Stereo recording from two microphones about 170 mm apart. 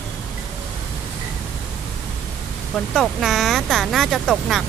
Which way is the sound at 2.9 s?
Centre (ahead or behind).